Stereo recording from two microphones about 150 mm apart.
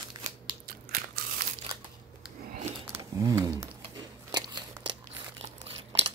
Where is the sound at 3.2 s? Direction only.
20° right (ahead or behind).